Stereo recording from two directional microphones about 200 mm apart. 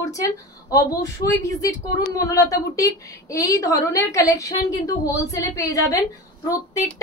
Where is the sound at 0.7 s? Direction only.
15° left (ahead or behind).